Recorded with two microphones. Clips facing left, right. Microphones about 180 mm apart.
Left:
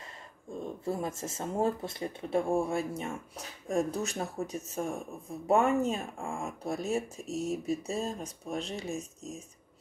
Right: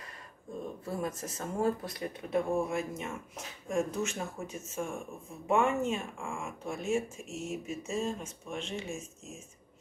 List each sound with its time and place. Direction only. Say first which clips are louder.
0.8 s speech: left 3 dB; 25° left (ahead or behind)